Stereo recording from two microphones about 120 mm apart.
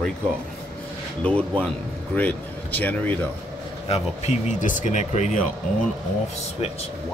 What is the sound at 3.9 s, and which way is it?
Speech, 80° left.